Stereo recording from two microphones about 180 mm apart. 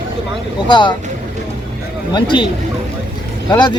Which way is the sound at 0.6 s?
25° left (ahead or behind).